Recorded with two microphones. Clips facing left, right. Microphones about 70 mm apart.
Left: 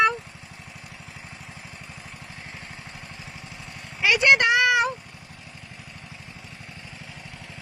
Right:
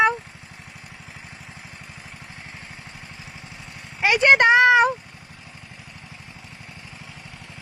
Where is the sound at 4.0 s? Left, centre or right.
Right.